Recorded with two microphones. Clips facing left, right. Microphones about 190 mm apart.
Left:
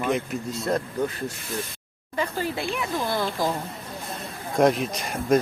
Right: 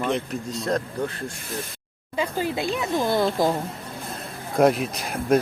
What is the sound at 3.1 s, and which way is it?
Speech, 25° right (ahead or behind).